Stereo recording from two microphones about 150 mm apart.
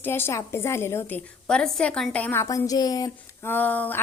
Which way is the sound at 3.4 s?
10° left (ahead or behind).